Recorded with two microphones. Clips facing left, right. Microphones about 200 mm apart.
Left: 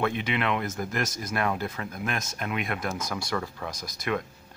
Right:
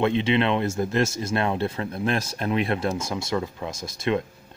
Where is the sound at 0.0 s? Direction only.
25° right (ahead or behind).